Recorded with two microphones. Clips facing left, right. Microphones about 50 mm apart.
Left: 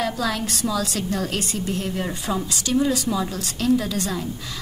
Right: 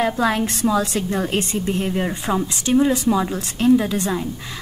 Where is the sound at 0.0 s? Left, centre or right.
Right.